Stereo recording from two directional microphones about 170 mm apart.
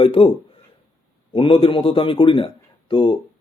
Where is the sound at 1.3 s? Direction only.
35° left (ahead or behind).